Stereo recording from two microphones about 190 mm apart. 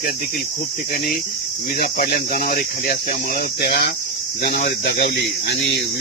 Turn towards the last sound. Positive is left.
turn(degrees=45)  # may be behind; listen again after turning